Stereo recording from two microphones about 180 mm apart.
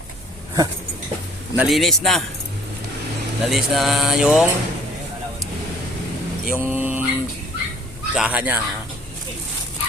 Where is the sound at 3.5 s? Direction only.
Centre (ahead or behind).